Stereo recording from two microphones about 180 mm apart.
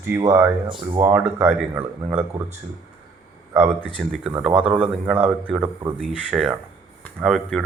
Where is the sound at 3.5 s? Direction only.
10° right (ahead or behind).